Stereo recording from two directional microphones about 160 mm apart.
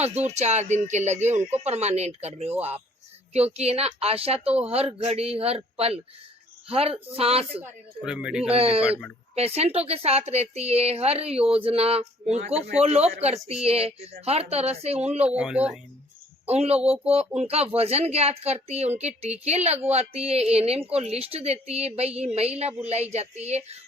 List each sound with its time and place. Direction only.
0.0 s speech: 40° right (ahead or behind)
7.5 s speech: 10° right (ahead or behind)
8.5 s speech: 40° right (ahead or behind)
15.3 s speech: 5° right (ahead or behind)
16.5 s speech: 40° right (ahead or behind)